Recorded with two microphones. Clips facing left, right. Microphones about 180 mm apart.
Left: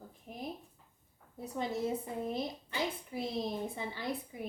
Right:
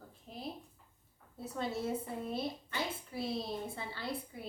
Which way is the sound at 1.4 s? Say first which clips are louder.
Left 2 dB; 15° left (ahead or behind).